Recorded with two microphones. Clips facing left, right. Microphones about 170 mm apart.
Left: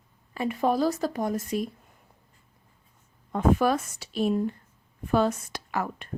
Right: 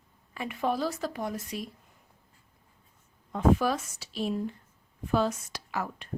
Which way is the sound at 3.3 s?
55° left (ahead or behind).